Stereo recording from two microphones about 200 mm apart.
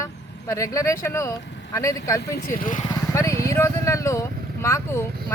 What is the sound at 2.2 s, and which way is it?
Speech, 50° left (ahead or behind).